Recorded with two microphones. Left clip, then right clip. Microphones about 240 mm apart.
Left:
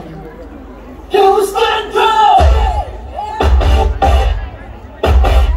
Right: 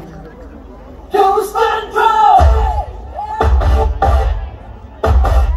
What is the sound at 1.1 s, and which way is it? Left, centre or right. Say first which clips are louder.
Music: left 2 dB; left.